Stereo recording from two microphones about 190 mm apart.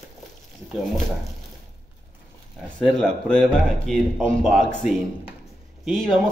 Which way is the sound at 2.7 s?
5° left (ahead or behind).